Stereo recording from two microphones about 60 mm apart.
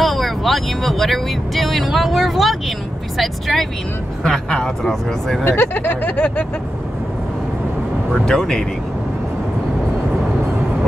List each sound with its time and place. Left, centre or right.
0.0 s speech: centre
5.6 s a sound: left
8.1 s speech: centre